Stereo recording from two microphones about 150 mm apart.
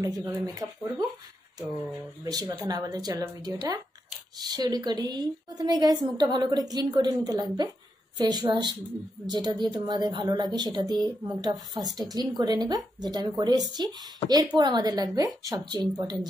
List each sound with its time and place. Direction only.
0.0 s a woman's voice: 20° right (ahead or behind)
2.2 s a woman's voice: 25° right (ahead or behind)